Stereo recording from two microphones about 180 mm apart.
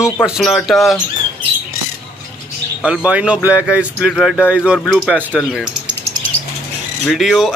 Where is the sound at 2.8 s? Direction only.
5° right (ahead or behind).